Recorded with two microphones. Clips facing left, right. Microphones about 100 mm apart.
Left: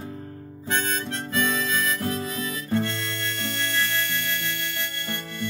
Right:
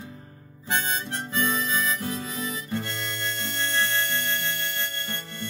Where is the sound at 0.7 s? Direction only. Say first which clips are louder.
Left 1 dB; 15° right (ahead or behind).